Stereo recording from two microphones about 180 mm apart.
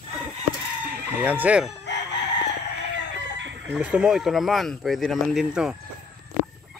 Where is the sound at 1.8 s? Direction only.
75° left (ahead or behind).